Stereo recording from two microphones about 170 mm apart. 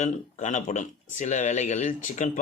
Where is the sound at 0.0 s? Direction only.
45° left (ahead or behind).